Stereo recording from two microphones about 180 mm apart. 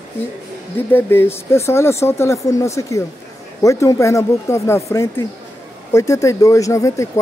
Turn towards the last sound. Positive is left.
turn(degrees=15)  # may be behind; listen again after turning